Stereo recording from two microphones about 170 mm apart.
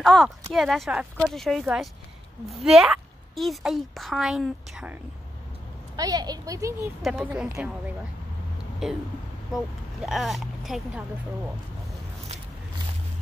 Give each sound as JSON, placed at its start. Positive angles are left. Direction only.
{"t": 0.0, "sound": "a woman's voice", "side_deg": 0}
{"t": 5.9, "sound": "a woman's voice", "side_deg": -20}
{"t": 7.0, "sound": "a woman's voice", "side_deg": -5}
{"t": 7.4, "sound": "a woman's voice", "side_deg": -15}
{"t": 8.8, "sound": "a woman's voice", "side_deg": 0}
{"t": 10.0, "sound": "a woman's voice", "side_deg": 0}